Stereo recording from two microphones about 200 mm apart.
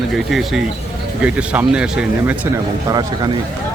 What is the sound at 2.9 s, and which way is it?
Speech, 20° right (ahead or behind).